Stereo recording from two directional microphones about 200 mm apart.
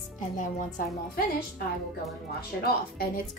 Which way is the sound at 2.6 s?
50° left (ahead or behind).